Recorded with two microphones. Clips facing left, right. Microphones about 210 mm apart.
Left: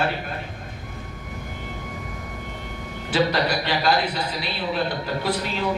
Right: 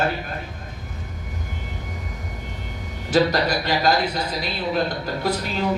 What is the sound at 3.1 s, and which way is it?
A man's voice, 40° right (ahead or behind).